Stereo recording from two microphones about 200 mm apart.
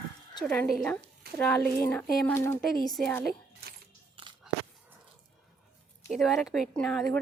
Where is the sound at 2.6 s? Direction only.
Centre (ahead or behind).